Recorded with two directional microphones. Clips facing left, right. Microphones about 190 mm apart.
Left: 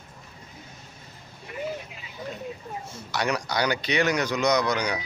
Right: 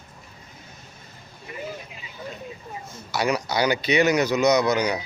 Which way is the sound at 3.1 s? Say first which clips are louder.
Right 3 dB; 5° right (ahead or behind).